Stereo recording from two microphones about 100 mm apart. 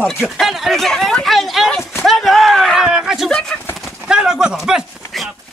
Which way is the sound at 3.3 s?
10° left (ahead or behind).